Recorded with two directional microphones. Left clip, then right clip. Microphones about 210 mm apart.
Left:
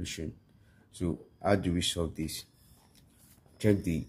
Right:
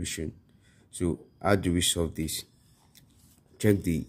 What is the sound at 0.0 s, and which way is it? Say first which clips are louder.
Speech: right 4 dB; 25° right (ahead or behind).